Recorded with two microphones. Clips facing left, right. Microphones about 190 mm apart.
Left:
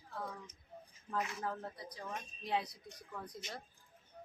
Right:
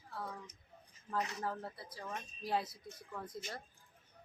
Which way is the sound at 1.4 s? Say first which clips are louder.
Even; 5° right (ahead or behind).